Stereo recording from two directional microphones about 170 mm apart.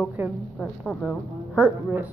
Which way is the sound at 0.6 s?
5° left (ahead or behind).